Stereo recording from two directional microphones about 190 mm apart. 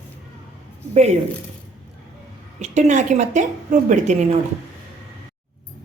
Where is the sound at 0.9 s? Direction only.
35° right (ahead or behind).